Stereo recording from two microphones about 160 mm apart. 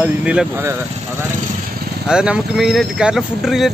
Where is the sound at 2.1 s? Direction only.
5° right (ahead or behind).